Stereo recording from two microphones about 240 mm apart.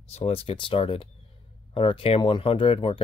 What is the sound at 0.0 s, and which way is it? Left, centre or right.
Speech, left.